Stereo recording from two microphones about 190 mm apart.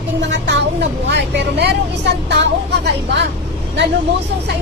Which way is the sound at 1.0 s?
65° right (ahead or behind).